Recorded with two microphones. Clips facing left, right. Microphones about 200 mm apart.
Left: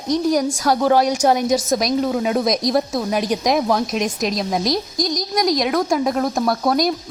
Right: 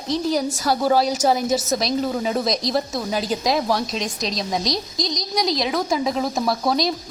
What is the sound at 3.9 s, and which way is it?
Speech, 15° left (ahead or behind).